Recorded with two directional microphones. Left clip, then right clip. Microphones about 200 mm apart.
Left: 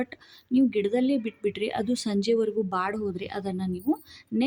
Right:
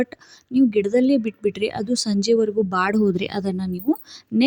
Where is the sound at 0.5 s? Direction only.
30° right (ahead or behind).